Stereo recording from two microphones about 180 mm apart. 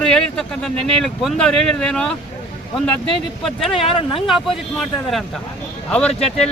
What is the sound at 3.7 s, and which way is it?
Speech, 30° left (ahead or behind).